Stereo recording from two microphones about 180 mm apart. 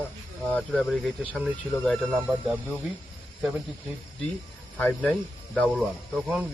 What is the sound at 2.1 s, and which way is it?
Speech, 10° right (ahead or behind).